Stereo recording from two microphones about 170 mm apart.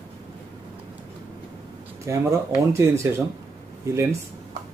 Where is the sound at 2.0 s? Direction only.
15° right (ahead or behind).